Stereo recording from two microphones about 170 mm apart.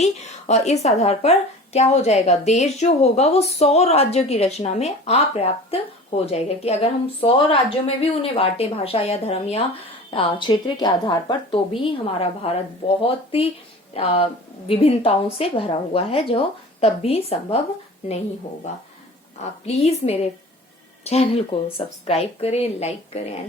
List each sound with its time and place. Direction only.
0.0 s a woman's voice: 40° left (ahead or behind)
19.6 s a woman's voice: 40° left (ahead or behind)